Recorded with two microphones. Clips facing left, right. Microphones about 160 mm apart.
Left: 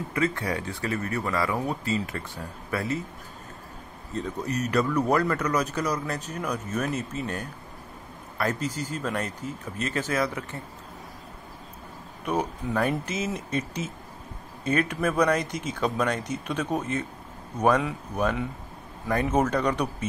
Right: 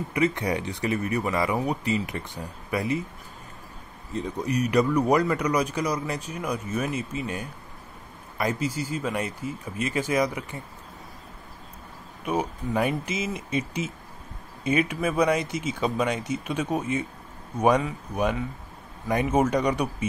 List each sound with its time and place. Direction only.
0.1 s speech: 20° right (ahead or behind)
4.1 s speech: 10° right (ahead or behind)
12.3 s speech: 10° right (ahead or behind)